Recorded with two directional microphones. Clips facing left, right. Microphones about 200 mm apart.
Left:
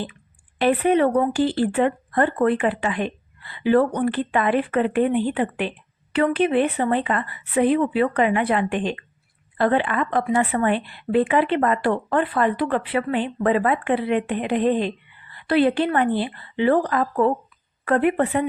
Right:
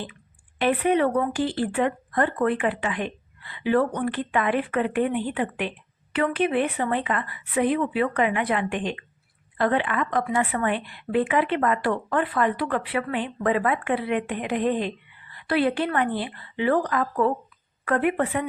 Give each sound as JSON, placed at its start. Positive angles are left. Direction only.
{"t": 0.6, "sound": "a woman's voice", "side_deg": 35}